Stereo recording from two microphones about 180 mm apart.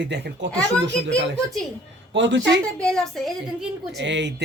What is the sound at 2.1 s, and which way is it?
Speech, 90° right.